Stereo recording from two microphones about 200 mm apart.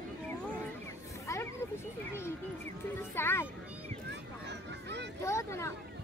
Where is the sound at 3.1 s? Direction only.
10° left (ahead or behind).